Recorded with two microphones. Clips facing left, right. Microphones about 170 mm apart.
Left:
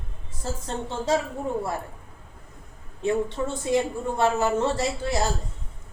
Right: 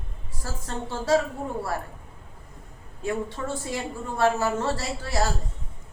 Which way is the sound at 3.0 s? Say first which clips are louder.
Left 4 dB; 20° left (ahead or behind).